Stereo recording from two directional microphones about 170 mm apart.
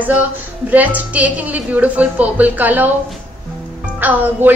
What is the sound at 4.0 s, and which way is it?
Speech, 10° right (ahead or behind).